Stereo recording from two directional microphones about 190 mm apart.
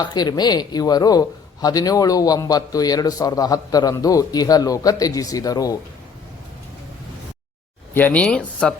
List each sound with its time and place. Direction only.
0.0 s speech: 20° left (ahead or behind)
7.9 s speech: 10° left (ahead or behind)